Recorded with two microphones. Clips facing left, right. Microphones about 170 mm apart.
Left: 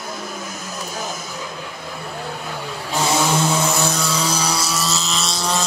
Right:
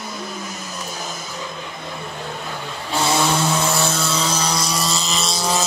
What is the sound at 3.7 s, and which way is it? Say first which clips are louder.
Vehicle: even; centre (ahead or behind).